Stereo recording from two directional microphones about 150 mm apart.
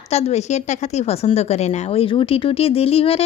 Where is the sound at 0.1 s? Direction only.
45° left (ahead or behind).